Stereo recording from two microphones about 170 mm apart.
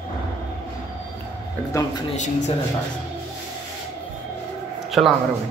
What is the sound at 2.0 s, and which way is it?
Speech, 45° left (ahead or behind).